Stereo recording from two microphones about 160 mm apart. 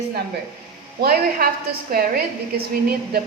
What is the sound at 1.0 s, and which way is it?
A woman's voice, 70° right (ahead or behind).